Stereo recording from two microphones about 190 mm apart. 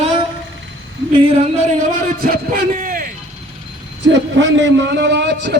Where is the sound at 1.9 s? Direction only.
45° right (ahead or behind).